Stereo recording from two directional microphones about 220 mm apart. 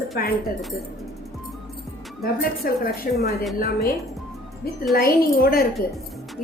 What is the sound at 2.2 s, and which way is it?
Speech, 45° left (ahead or behind).